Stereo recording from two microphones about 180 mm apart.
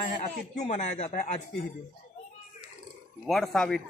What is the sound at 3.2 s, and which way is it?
Speech, centre (ahead or behind).